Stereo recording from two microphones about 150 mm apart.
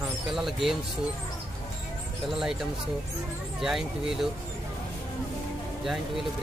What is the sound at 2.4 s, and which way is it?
Speech, 5° right (ahead or behind).